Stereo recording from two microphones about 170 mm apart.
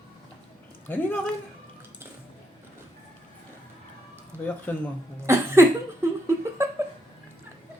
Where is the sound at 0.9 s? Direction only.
10° left (ahead or behind).